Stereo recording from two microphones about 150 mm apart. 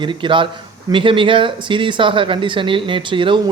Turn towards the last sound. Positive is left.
turn(degrees=-35)  # may be behind; listen again after turning